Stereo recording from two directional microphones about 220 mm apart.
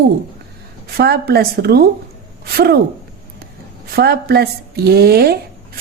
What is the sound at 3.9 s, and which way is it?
Speech, 45° right (ahead or behind).